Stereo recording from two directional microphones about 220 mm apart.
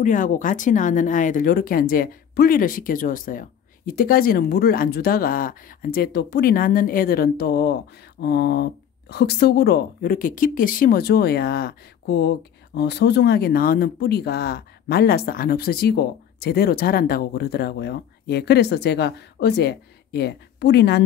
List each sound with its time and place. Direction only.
0.0 s a woman's voice: 35° left (ahead or behind)